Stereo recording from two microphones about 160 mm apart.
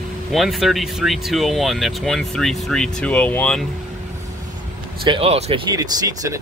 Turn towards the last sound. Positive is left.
turn(degrees=-20)  # may be behind; listen again after turning